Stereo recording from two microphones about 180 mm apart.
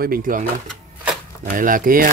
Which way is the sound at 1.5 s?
50° right (ahead or behind).